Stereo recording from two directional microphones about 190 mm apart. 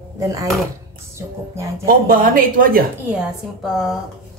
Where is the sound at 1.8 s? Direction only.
50° right (ahead or behind).